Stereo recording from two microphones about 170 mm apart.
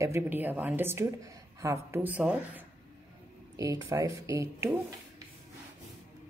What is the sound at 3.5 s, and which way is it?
Speech, 20° right (ahead or behind).